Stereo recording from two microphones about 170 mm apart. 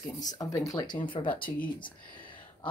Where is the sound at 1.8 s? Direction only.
30° left (ahead or behind).